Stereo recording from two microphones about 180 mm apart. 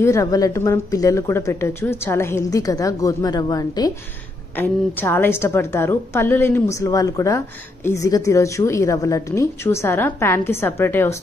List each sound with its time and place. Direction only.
0.0 s a woman's voice: 15° left (ahead or behind)